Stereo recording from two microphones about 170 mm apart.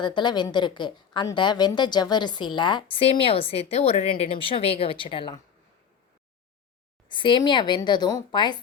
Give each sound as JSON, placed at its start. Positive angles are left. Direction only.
{"t": 0.0, "sound": "a woman's voice", "side_deg": 25}
{"t": 7.1, "sound": "a woman's voice", "side_deg": 30}